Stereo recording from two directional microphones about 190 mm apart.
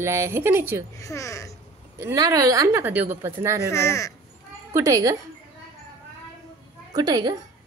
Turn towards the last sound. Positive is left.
turn(degrees=-20)  # may be behind; listen again after turning